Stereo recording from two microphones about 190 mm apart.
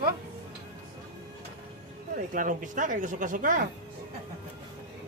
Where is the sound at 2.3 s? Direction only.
45° right (ahead or behind).